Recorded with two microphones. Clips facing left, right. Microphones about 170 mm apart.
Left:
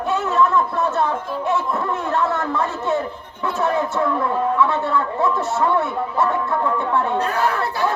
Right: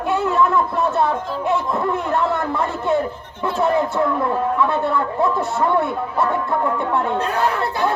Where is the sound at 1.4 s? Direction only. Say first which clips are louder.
Right 2 dB; 15° right (ahead or behind).